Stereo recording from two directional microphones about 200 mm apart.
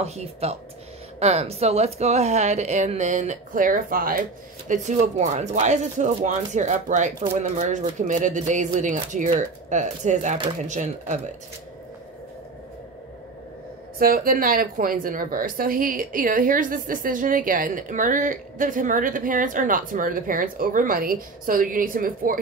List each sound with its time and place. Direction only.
0.0 s speech: 30° right (ahead or behind)
13.9 s a woman's voice: 45° right (ahead or behind)